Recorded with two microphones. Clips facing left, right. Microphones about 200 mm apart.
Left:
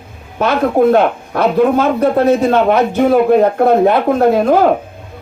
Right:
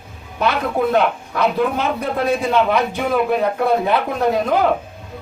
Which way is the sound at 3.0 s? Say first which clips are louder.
Left 10 dB; 40° left (ahead or behind).